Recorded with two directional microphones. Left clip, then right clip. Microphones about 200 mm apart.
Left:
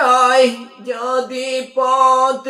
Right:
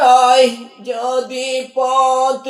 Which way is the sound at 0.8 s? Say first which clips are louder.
Right 1 dB; 10° left (ahead or behind).